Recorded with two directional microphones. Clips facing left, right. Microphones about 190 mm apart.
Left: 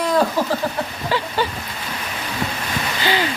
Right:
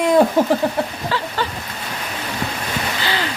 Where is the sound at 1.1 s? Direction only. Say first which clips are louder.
Left 1 dB; 15° left (ahead or behind).